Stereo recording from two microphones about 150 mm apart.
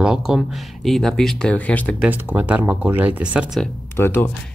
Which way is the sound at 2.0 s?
10° right (ahead or behind).